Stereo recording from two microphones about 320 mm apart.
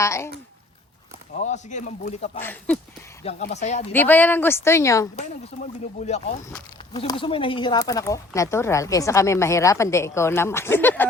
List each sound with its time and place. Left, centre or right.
0.0 s speech: centre
1.4 s a man's voice: left
2.4 s speech: centre
3.2 s a man's voice: left
3.9 s speech: centre
6.0 s a man's voice: centre